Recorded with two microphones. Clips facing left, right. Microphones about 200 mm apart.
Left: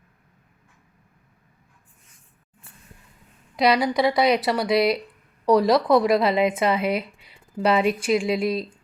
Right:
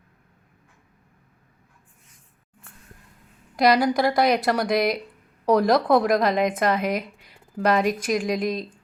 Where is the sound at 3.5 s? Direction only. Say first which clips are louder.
Right 1 dB; centre (ahead or behind).